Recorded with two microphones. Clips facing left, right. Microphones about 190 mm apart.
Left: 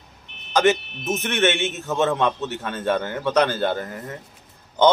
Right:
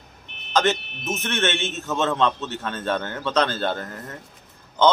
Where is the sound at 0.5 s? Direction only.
15° left (ahead or behind).